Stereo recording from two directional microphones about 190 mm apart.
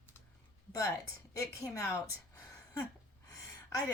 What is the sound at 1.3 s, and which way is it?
A woman's voice, 15° left (ahead or behind).